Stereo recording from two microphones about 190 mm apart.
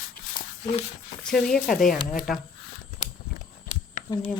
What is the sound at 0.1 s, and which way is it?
Dog, 50° left (ahead or behind).